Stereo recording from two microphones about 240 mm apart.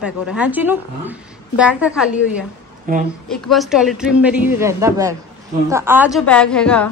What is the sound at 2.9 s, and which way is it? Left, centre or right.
Speech, right.